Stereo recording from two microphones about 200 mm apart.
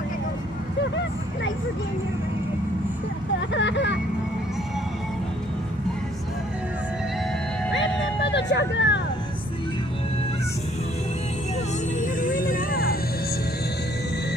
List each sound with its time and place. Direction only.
3.3 s vehicle: 65° left (ahead or behind)
7.7 s vehicle: 65° left (ahead or behind)
12.0 s music: 45° left (ahead or behind)